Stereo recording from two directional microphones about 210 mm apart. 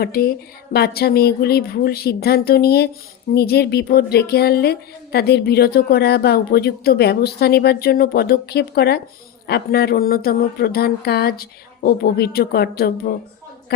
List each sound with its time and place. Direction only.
0.0 s a woman's voice: 45° left (ahead or behind)